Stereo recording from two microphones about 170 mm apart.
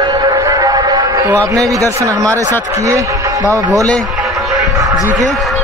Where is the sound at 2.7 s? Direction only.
20° right (ahead or behind).